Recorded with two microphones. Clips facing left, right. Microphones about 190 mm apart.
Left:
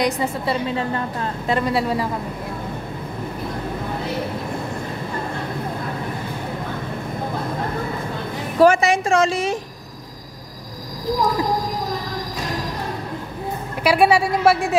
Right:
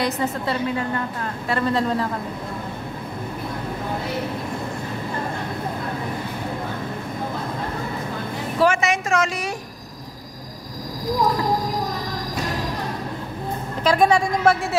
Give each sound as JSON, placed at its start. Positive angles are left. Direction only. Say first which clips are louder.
{"t": 0.0, "sound": "a woman's voice", "louder": "left 2 dB", "side_deg": 10}
{"t": 8.5, "sound": "a woman's voice", "louder": "left 5 dB", "side_deg": 40}
{"t": 13.8, "sound": "a woman's voice", "louder": "left 2 dB", "side_deg": 10}